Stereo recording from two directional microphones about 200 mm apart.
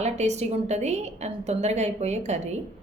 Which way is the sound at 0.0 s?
35° right (ahead or behind).